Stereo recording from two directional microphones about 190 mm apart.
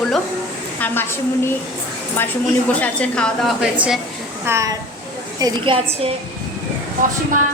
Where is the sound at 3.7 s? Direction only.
5° right (ahead or behind); by 5.8 s 25° right (ahead or behind).